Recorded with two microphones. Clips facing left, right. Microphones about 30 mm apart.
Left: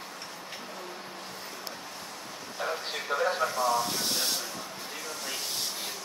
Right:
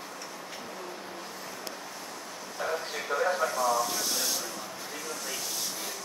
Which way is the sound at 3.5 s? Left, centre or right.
Left.